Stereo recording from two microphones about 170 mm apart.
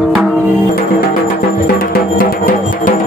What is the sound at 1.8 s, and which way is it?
Music, 60° left (ahead or behind).